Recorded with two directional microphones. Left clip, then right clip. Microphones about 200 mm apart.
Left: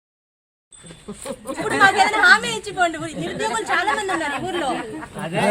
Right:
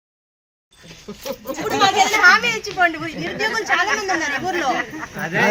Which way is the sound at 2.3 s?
5° right (ahead or behind).